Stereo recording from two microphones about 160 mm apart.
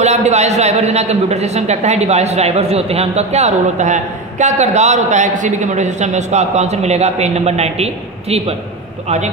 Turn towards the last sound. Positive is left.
turn(degrees=-40)  # may be behind; listen again after turning